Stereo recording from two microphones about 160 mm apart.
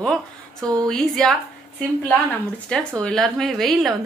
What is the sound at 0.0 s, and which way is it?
A woman's voice, 5° left (ahead or behind).